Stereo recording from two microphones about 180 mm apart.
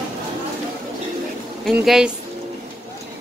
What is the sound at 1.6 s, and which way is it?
Speech, centre (ahead or behind).